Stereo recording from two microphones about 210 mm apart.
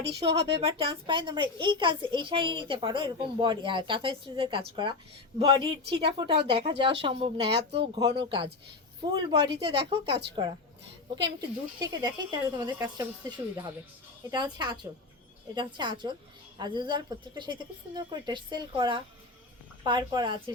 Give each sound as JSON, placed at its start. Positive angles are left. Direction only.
{"t": 0.0, "sound": "a child's voice", "side_deg": -30}